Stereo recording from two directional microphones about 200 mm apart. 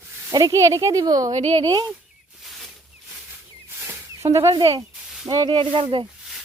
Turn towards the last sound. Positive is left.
turn(degrees=-25)  # may be behind; listen again after turning